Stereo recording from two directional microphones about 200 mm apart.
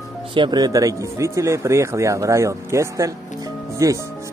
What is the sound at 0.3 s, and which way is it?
Speech, 20° right (ahead or behind).